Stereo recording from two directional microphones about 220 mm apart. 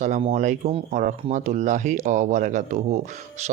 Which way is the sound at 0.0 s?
30° right (ahead or behind).